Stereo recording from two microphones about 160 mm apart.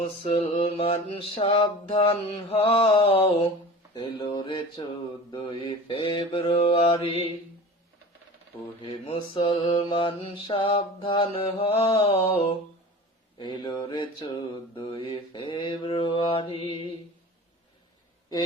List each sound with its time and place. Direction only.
0.0 s mantra: 35° left (ahead or behind)
3.9 s a sound: 30° left (ahead or behind)
5.3 s mantra: 30° left (ahead or behind)
9.0 s mantra: 35° left (ahead or behind)
13.4 s a sound: 30° left (ahead or behind)
14.8 s mantra: 30° left (ahead or behind)